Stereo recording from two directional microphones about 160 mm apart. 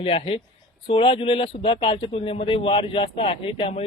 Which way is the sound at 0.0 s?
40° left (ahead or behind).